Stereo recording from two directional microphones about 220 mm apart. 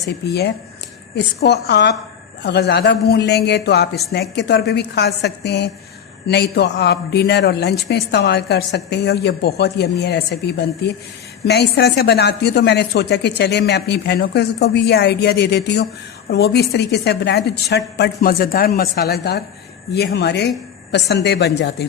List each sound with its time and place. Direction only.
1.1 s a woman's voice: 50° left (ahead or behind)